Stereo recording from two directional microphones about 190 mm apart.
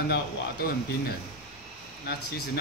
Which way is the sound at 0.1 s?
55° left (ahead or behind).